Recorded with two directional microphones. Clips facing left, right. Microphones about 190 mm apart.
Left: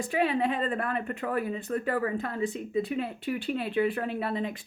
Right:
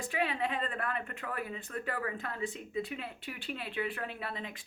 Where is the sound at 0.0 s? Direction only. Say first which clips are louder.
Left 7 dB; 35° left (ahead or behind).